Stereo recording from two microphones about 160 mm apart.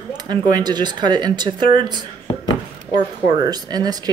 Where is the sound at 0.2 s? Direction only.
25° right (ahead or behind).